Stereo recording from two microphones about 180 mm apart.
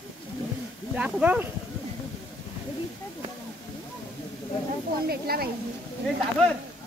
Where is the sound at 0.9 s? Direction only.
5° right (ahead or behind).